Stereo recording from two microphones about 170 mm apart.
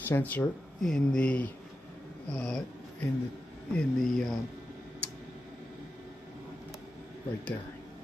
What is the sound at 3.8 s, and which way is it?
Speech, 5° left (ahead or behind).